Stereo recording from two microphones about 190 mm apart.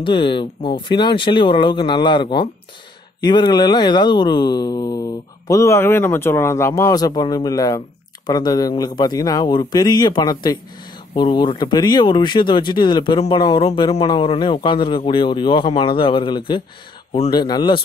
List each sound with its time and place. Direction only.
0.0 s a man's voice: 25° left (ahead or behind)